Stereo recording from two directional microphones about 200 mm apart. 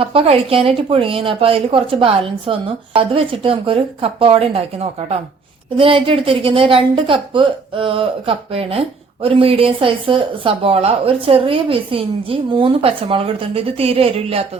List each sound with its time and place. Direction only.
0.0 s a woman's voice: 30° right (ahead or behind)